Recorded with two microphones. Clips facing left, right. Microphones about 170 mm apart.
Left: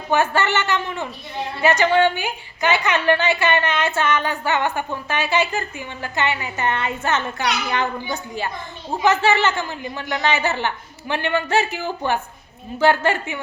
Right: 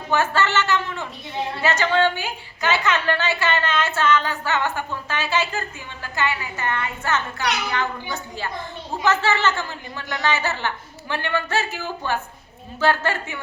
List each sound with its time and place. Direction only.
0.1 s a woman's voice: 15° left (ahead or behind)
9.0 s a woman's voice: 15° left (ahead or behind)